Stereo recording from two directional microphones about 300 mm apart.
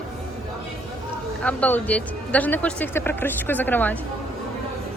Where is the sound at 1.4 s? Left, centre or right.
Centre.